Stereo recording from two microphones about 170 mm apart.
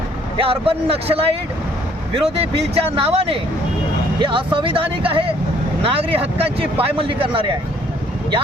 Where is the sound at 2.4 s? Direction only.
35° right (ahead or behind).